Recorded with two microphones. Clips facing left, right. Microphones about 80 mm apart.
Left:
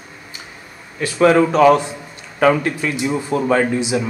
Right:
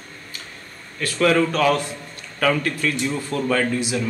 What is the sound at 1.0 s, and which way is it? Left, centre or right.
Speech, centre.